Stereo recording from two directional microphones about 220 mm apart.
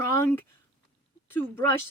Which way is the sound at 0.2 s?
10° left (ahead or behind).